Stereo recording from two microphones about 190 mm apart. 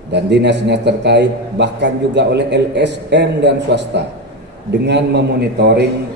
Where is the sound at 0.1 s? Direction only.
65° right (ahead or behind).